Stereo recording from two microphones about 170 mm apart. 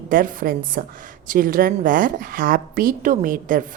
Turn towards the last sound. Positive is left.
turn(degrees=-50)  # may be behind; listen again after turning